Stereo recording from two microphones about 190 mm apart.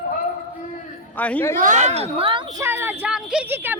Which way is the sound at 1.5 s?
40° right (ahead or behind).